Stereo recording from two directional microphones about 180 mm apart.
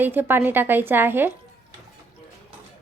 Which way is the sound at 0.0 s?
10° right (ahead or behind).